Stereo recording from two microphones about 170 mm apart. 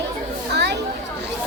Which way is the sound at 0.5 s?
85° right.